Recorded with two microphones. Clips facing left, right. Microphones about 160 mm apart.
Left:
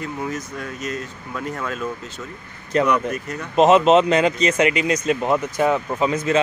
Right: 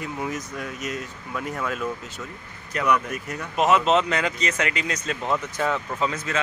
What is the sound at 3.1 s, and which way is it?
Speech, 10° right (ahead or behind).